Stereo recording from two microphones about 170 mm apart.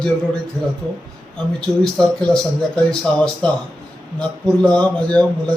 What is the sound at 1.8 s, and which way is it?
Speech, 5° left (ahead or behind).